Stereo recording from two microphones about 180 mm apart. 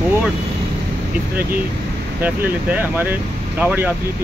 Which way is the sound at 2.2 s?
10° right (ahead or behind).